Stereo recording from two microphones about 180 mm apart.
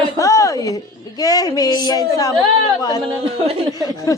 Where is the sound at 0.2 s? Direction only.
20° left (ahead or behind).